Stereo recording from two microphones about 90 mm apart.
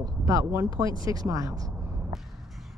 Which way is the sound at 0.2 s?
40° right (ahead or behind).